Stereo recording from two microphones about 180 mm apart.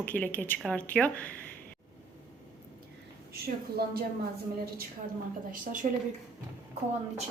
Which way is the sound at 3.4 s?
60° right (ahead or behind).